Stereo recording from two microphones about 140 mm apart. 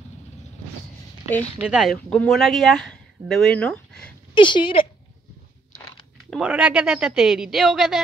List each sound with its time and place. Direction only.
1.6 s speech: 5° right (ahead or behind)
4.3 s speech: 35° left (ahead or behind)
6.4 s speech: 10° right (ahead or behind)